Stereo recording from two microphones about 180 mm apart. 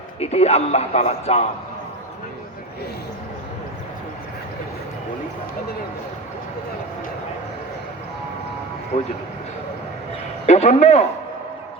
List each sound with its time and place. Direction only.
0.2 s a man's voice: 35° left (ahead or behind)
10.4 s a man's voice: 40° left (ahead or behind)